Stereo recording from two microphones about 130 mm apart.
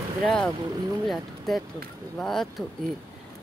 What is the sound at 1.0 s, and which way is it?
Speech, centre (ahead or behind).